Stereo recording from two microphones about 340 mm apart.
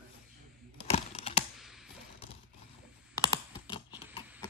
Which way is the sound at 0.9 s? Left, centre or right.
Centre.